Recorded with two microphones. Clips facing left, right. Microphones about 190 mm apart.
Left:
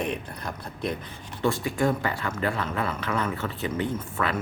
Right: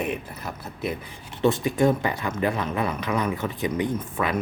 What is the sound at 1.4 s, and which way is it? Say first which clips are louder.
Speech: right 4 dB; 20° right (ahead or behind).